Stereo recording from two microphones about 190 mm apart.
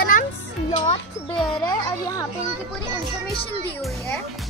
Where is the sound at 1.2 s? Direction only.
30° left (ahead or behind).